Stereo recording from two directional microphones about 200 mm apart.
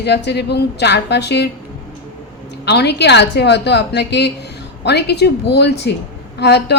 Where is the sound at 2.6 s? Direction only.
55° left (ahead or behind).